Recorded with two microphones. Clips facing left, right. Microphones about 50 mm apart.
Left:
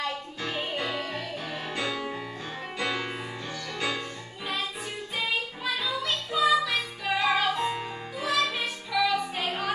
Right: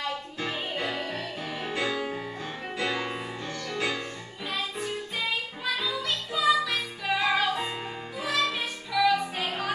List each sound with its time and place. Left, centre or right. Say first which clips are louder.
0.4 s music: left 1 dB; centre
1.7 s music: right 2 dB; centre
2.8 s music: right 1 dB; centre
5.8 s music: even; centre
7.5 s music: left 3 dB; centre
8.2 s music: left 1 dB; centre